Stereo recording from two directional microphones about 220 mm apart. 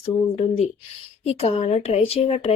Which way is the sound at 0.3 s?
25° left (ahead or behind).